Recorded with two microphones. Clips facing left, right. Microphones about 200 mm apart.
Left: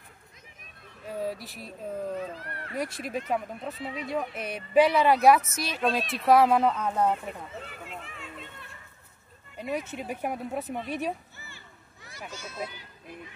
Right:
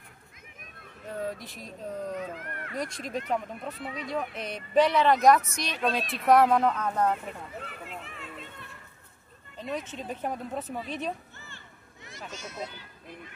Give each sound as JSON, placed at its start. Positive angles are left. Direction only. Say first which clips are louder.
{"t": 1.0, "sound": "speech", "louder": "left 2 dB", "side_deg": 10}
{"t": 2.1, "sound": "speech", "louder": "left 1 dB", "side_deg": 35}
{"t": 2.7, "sound": "speech", "louder": "left 2 dB", "side_deg": 5}
{"t": 7.8, "sound": "a sound", "louder": "even", "side_deg": 0}
{"t": 9.6, "sound": "speech", "louder": "left 2 dB", "side_deg": 10}
{"t": 10.9, "sound": "a sound", "louder": "left 2 dB", "side_deg": 10}
{"t": 12.4, "sound": "speech", "louder": "left 1 dB", "side_deg": -20}